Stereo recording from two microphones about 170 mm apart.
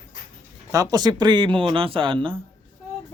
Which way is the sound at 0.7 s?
20° right (ahead or behind).